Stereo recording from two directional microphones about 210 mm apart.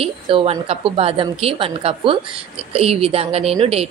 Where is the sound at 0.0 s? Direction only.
25° right (ahead or behind).